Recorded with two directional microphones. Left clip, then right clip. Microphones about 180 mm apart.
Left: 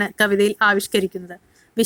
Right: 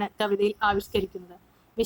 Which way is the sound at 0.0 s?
40° left (ahead or behind).